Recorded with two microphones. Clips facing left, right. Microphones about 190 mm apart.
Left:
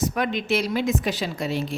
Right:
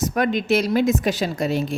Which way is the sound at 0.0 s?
45° right (ahead or behind).